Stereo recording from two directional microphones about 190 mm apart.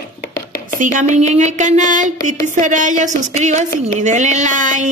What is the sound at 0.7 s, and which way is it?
Speech, 40° right (ahead or behind).